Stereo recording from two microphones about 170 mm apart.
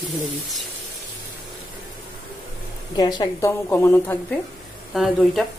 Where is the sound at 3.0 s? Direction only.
25° left (ahead or behind).